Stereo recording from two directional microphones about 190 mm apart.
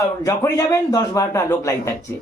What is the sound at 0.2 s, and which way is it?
Speech, 20° left (ahead or behind).